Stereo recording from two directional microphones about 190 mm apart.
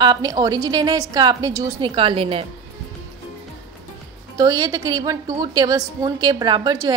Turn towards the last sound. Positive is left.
turn(degrees=-20)  # may be behind; listen again after turning